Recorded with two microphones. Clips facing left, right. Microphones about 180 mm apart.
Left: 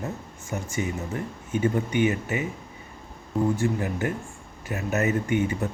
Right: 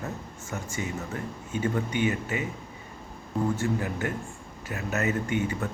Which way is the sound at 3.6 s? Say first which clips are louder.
Left 3 dB; 20° left (ahead or behind).